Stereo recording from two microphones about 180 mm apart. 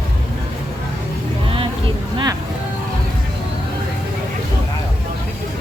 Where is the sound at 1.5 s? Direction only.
30° right (ahead or behind).